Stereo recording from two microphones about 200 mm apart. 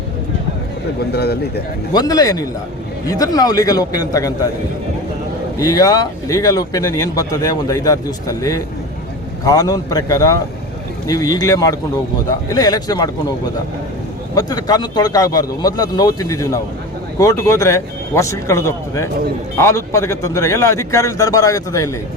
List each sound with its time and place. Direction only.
1.1 s speech: 55° left (ahead or behind)
1.9 s speech: 20° left (ahead or behind)
5.5 s speech: 20° left (ahead or behind)
14.3 s speech: 20° left (ahead or behind)